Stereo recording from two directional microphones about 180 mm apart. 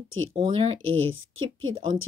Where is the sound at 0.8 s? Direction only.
90° right.